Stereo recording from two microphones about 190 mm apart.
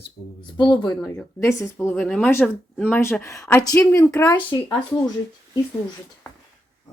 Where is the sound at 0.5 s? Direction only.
20° left (ahead or behind).